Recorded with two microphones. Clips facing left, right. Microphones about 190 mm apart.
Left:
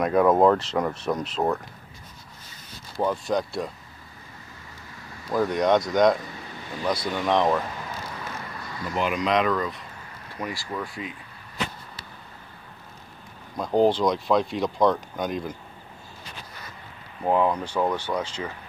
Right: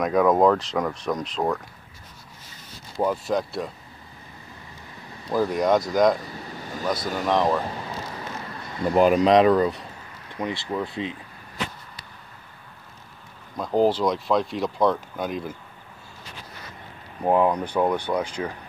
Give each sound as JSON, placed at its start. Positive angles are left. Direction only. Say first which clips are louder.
{"t": 0.0, "sound": "speech", "louder": "even", "side_deg": 5}
{"t": 3.0, "sound": "speech", "louder": "right 1 dB", "side_deg": -5}
{"t": 5.3, "sound": "speech", "louder": "even", "side_deg": -5}
{"t": 8.8, "sound": "speech", "louder": "right 8 dB", "side_deg": -45}
{"t": 10.3, "sound": "speech", "louder": "right 4 dB", "side_deg": -20}
{"t": 13.6, "sound": "speech", "louder": "even", "side_deg": 0}
{"t": 17.2, "sound": "speech", "louder": "right 2 dB", "side_deg": -15}